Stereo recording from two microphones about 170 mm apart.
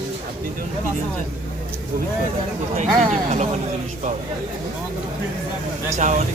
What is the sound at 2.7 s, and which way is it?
Speech, 45° right (ahead or behind).